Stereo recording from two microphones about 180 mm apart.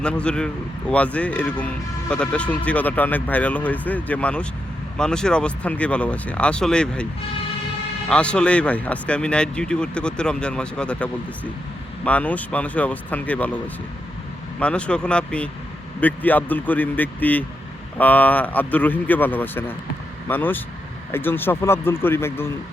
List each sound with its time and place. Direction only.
0.0 s speech: 5° left (ahead or behind)
8.1 s speech: 5° left (ahead or behind)
14.6 s speech: 5° left (ahead or behind)